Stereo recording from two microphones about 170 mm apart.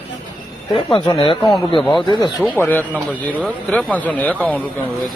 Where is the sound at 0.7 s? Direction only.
25° left (ahead or behind).